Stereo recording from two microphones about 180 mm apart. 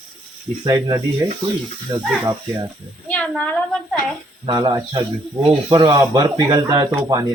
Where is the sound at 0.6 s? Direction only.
20° right (ahead or behind).